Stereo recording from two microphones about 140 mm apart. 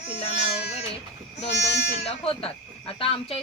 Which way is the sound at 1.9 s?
50° left (ahead or behind).